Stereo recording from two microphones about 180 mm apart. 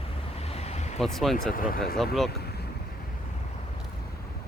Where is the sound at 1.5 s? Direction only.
50° left (ahead or behind).